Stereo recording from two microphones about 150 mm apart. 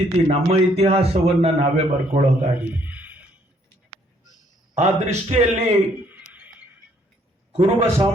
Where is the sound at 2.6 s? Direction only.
10° right (ahead or behind).